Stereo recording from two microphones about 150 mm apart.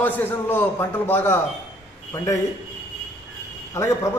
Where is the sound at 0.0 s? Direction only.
15° left (ahead or behind).